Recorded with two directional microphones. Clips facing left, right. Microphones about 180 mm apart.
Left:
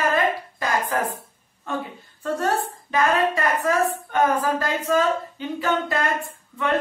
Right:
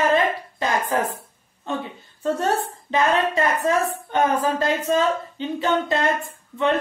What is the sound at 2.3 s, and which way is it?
A woman's voice, 25° right (ahead or behind).